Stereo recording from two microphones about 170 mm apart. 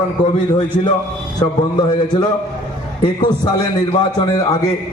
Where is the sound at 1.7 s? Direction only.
25° left (ahead or behind).